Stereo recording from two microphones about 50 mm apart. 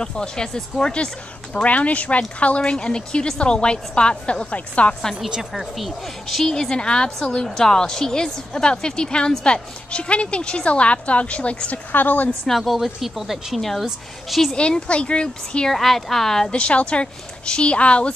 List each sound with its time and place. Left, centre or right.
0.0 s a woman's voice: centre
5.5 s a woman's voice: centre; by 11.8 s left
11.9 s a woman's voice: left
12.4 s a woman's voice: centre
14.5 s a woman's voice: left
15.7 s a woman's voice: centre; by 18.1 s left